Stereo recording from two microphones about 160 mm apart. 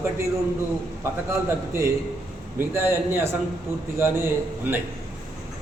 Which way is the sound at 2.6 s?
15° right (ahead or behind).